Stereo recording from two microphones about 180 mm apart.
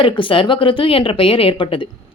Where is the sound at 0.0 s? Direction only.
30° left (ahead or behind).